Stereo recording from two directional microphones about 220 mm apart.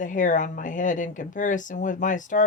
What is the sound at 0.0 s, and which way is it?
Speech, 35° left (ahead or behind).